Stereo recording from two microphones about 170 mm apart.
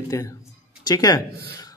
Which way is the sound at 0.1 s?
20° left (ahead or behind).